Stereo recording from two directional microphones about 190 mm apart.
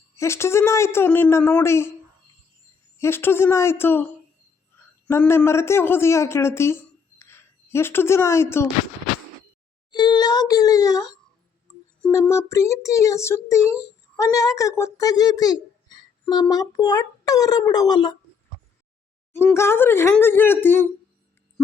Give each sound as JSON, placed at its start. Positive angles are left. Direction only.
{"t": 0.2, "sound": "a child's voice", "side_deg": 15}
{"t": 3.0, "sound": "a child's voice", "side_deg": 10}
{"t": 5.0, "sound": "a child's voice", "side_deg": 10}
{"t": 9.9, "sound": "a child's voice", "side_deg": 20}
{"t": 12.3, "sound": "a child's voice", "side_deg": 15}
{"t": 19.3, "sound": "a child's voice", "side_deg": 10}